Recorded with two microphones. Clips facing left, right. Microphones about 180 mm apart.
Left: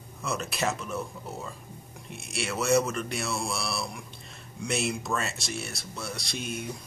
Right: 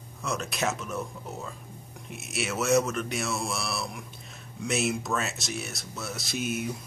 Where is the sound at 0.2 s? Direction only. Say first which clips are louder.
Even; centre (ahead or behind).